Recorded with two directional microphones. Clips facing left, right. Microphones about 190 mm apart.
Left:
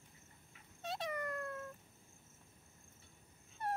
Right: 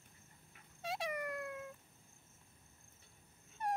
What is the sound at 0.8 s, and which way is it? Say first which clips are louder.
Dog: even; 10° right (ahead or behind).